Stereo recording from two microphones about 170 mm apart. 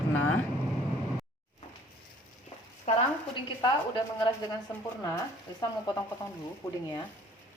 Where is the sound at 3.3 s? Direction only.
25° left (ahead or behind).